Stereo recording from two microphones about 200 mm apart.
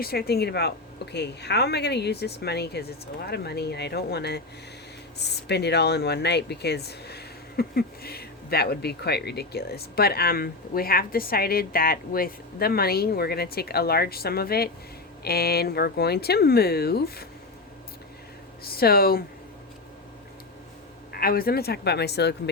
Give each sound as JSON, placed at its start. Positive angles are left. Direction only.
{"t": 0.0, "sound": "speech", "side_deg": 50}
{"t": 18.6, "sound": "speech", "side_deg": 50}
{"t": 21.1, "sound": "speech", "side_deg": 50}